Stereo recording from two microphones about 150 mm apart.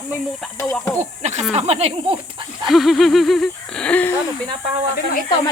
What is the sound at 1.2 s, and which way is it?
Speech, 50° right (ahead or behind).